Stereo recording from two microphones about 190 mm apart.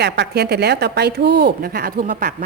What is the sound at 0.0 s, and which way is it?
A woman's voice, 60° right (ahead or behind).